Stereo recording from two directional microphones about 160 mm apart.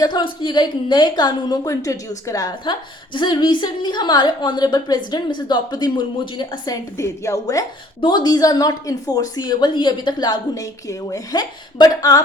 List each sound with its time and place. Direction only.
0.0 s a woman's voice: 30° left (ahead or behind)